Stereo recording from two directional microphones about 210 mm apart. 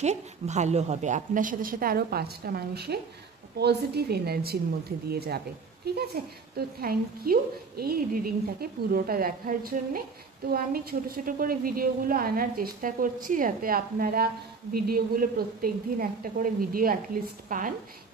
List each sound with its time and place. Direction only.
0.0 s a woman's voice: 35° right (ahead or behind)